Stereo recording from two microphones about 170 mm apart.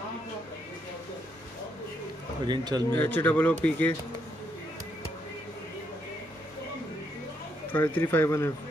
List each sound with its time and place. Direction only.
2.4 s a man's voice: 25° right (ahead or behind)
2.9 s speech: 10° left (ahead or behind)
7.7 s speech: 10° left (ahead or behind)